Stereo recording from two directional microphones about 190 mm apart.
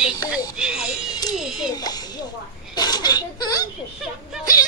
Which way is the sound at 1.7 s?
20° left (ahead or behind).